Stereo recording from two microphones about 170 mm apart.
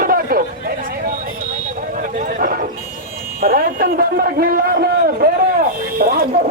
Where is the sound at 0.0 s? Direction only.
60° right (ahead or behind).